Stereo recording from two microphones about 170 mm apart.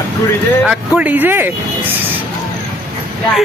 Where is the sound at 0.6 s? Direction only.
5° right (ahead or behind).